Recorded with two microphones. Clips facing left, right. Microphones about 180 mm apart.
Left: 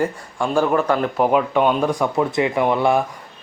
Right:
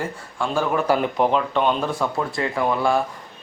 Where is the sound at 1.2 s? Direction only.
10° left (ahead or behind).